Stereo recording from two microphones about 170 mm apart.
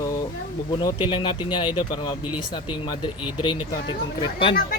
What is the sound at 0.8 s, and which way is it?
Speech, 25° left (ahead or behind).